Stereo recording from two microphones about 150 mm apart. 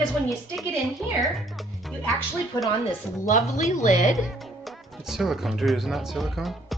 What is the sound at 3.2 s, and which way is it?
Speech, 55° left (ahead or behind).